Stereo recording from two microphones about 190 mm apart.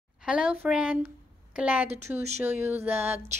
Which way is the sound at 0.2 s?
5° right (ahead or behind).